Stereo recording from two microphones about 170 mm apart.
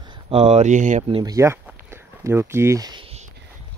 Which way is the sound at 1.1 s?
25° right (ahead or behind).